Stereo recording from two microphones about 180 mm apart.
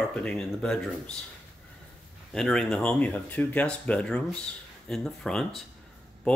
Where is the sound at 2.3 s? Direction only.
5° left (ahead or behind).